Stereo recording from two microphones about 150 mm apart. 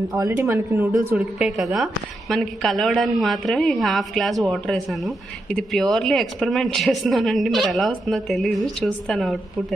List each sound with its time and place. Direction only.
0.2 s a woman's voice: 20° right (ahead or behind)
1.1 s a woman's voice: 5° right (ahead or behind)